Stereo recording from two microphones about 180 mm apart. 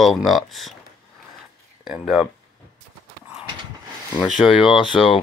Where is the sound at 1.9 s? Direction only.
Centre (ahead or behind).